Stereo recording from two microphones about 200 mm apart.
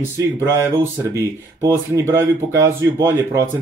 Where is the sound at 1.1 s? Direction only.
15° right (ahead or behind).